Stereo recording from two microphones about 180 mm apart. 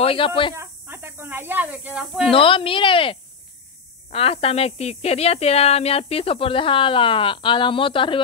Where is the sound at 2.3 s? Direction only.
30° left (ahead or behind).